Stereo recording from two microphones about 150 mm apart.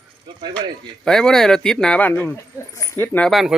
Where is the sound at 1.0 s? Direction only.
5° left (ahead or behind).